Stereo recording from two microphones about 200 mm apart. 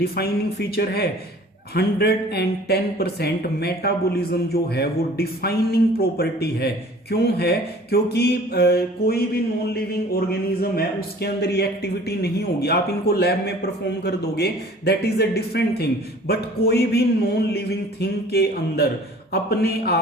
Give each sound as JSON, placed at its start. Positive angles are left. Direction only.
{"t": 0.0, "sound": "speech", "side_deg": 50}